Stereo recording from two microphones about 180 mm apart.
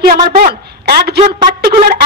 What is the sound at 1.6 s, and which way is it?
Speech, 55° right (ahead or behind).